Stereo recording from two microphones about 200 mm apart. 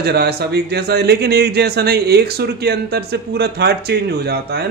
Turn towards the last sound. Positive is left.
turn(degrees=-55)  # may be behind; listen again after turning